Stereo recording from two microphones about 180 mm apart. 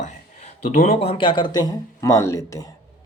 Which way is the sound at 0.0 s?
40° left (ahead or behind).